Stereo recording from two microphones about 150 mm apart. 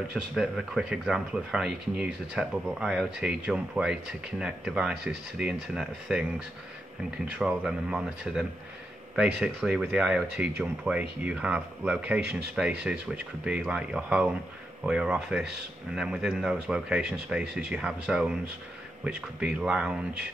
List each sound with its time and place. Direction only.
0.1 s speech: centre (ahead or behind)
7.2 s speech: 5° right (ahead or behind)